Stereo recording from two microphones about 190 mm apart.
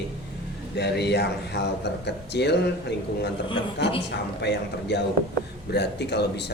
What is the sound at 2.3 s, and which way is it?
Speech, 60° left (ahead or behind).